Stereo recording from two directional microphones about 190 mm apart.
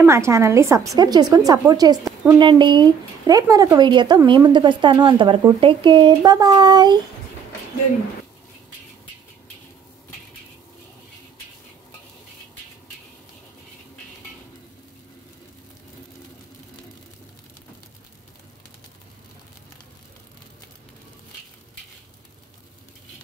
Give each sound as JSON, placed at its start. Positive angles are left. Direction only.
{"t": 0.0, "sound": "a woman's voice", "side_deg": -15}